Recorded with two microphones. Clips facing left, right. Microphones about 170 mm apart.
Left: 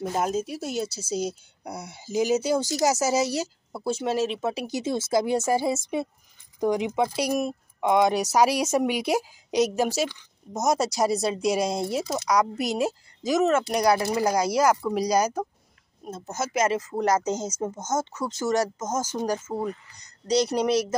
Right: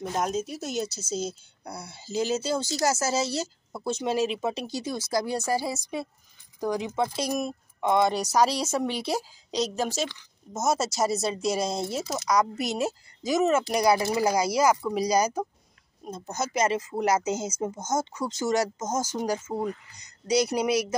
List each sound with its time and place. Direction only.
0.0 s speech: 5° left (ahead or behind)
4.6 s a woman's voice: 20° left (ahead or behind)
11.0 s speech: 5° right (ahead or behind)
16.9 s speech: 10° right (ahead or behind)